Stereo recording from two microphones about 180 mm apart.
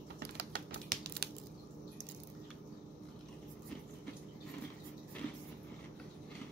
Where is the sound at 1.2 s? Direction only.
65° right (ahead or behind).